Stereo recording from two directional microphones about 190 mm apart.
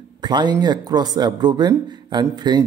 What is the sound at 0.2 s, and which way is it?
Speech, 25° right (ahead or behind).